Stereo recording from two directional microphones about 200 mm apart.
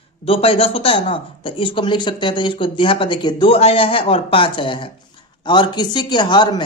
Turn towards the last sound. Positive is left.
turn(degrees=20)  # may be behind; listen again after turning